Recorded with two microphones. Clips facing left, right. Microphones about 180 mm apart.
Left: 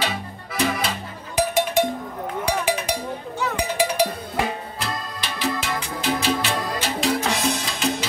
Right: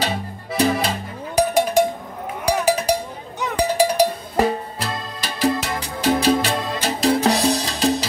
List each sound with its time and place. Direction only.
0.6 s cowbell: 40° right (ahead or behind)
2.6 s a sound: 40° right (ahead or behind)
3.5 s cowbell: 40° right (ahead or behind)
5.6 s music: 40° right (ahead or behind)